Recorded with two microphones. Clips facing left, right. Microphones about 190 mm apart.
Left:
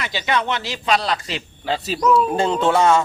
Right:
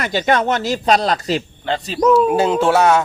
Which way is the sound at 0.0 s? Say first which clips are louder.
Right 6 dB; 45° right (ahead or behind).